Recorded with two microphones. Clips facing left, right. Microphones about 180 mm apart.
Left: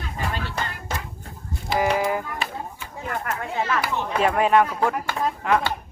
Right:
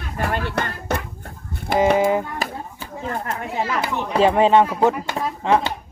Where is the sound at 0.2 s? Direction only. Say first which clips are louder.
Right 6 dB; 60° right (ahead or behind).